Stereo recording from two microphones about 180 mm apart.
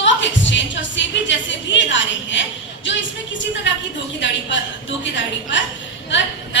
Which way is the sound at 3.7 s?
90° left.